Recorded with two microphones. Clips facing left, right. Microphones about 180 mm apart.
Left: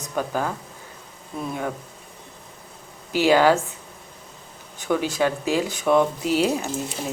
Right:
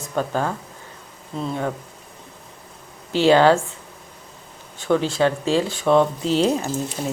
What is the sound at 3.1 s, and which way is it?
Speech, 10° left (ahead or behind).